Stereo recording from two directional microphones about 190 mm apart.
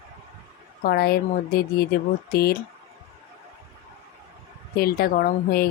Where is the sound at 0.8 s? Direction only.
55° left (ahead or behind).